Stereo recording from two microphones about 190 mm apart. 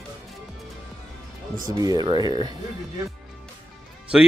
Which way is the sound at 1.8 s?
20° right (ahead or behind).